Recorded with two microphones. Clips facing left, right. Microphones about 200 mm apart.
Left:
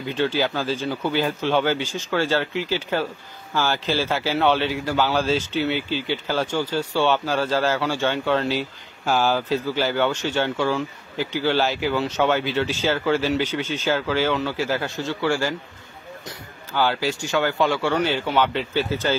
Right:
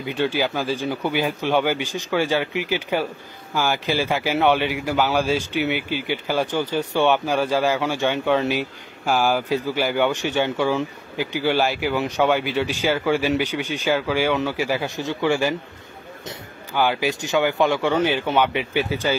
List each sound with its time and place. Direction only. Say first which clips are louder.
0.0 s a man's voice: even; 15° right (ahead or behind)